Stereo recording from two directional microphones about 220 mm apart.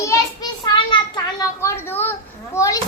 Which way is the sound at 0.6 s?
20° left (ahead or behind).